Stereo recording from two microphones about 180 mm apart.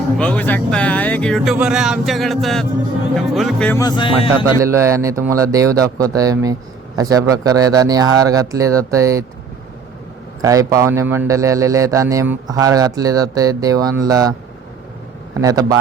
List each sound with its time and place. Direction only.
0.2 s speech: 10° left (ahead or behind)
3.8 s music: 25° left (ahead or behind)
4.6 s speech: 15° right (ahead or behind)
10.4 s a man's voice: 20° right (ahead or behind)
15.4 s speech: 20° right (ahead or behind)